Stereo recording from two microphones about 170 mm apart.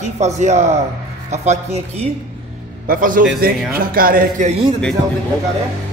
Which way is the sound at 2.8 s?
55° right (ahead or behind).